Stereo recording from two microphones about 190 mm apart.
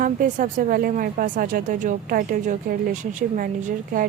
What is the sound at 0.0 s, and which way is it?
Speech, 45° right (ahead or behind).